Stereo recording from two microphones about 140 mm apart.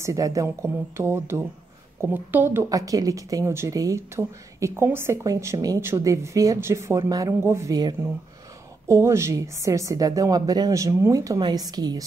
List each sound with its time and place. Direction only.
0.0 s speech: 25° right (ahead or behind)